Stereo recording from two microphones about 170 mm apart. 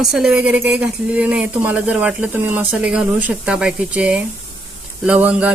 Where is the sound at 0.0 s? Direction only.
5° right (ahead or behind).